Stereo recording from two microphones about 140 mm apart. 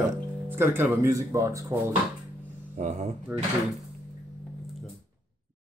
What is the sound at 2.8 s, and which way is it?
Speech, 60° right (ahead or behind).